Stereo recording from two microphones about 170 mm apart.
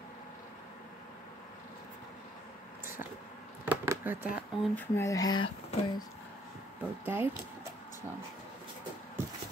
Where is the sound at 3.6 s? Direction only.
10° right (ahead or behind).